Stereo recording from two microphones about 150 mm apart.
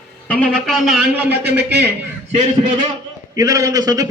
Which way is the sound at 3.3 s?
20° right (ahead or behind).